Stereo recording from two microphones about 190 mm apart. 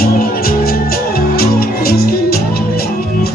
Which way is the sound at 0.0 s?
50° left (ahead or behind).